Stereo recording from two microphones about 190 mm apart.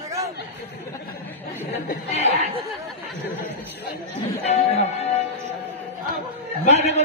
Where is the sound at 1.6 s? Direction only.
40° left (ahead or behind).